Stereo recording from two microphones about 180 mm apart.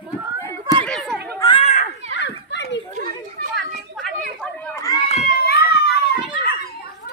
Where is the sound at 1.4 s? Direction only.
25° left (ahead or behind).